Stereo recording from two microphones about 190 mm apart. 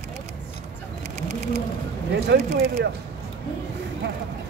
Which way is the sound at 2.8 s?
65° right (ahead or behind).